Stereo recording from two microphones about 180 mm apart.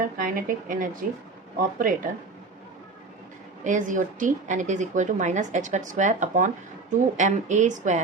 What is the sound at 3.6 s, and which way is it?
A woman's voice, 45° right (ahead or behind).